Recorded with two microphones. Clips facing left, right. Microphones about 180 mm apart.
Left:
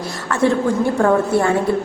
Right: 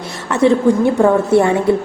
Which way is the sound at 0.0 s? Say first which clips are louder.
Right 2 dB; 25° right (ahead or behind).